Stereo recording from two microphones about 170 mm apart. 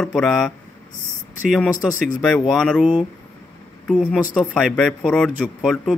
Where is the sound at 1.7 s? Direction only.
50° left (ahead or behind).